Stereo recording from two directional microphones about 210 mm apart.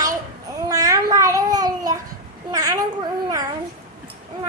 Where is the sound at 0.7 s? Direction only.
15° right (ahead or behind).